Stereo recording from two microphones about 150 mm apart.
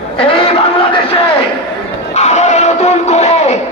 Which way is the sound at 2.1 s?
50° left (ahead or behind).